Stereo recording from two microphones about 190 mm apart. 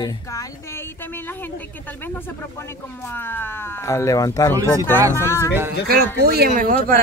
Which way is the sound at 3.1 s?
10° left (ahead or behind).